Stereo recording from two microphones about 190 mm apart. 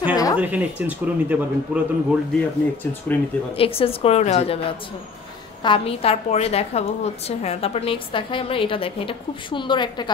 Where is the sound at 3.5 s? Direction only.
30° left (ahead or behind).